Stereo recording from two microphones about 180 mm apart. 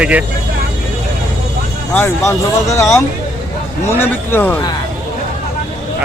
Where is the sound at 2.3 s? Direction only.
15° left (ahead or behind).